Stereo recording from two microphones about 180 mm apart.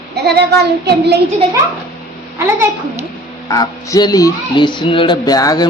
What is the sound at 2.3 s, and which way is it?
Speech, 15° right (ahead or behind).